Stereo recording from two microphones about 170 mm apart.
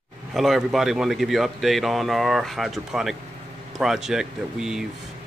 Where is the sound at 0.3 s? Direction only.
Centre (ahead or behind).